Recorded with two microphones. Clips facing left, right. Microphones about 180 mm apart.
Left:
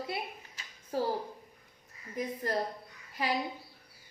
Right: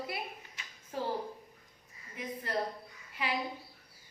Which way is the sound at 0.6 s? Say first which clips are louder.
Left 5 dB; 35° left (ahead or behind).